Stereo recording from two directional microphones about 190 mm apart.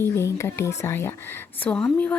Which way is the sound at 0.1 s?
15° left (ahead or behind).